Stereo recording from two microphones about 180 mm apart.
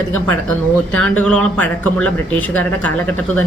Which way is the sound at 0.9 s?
5° left (ahead or behind).